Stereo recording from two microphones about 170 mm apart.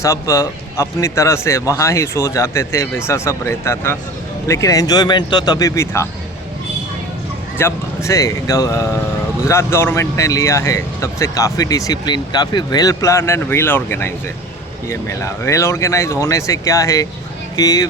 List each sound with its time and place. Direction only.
0.0 s speech: 20° left (ahead or behind)
7.6 s speech: 15° left (ahead or behind)